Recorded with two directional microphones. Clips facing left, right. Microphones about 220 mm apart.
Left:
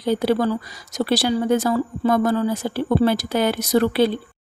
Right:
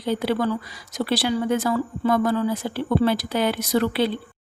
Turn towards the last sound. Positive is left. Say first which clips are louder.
# left 4 dB
turn(degrees=45)  # may be behind; listen again after turning